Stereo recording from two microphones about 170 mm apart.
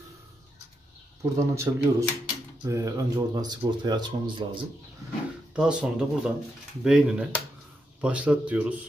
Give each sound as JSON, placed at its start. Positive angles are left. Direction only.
{"t": 1.2, "sound": "speech", "side_deg": -15}
{"t": 5.5, "sound": "speech", "side_deg": -5}